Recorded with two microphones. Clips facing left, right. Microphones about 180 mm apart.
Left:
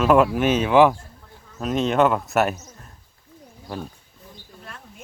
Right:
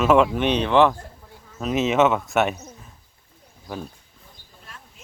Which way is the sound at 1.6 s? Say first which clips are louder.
Even; 5° right (ahead or behind).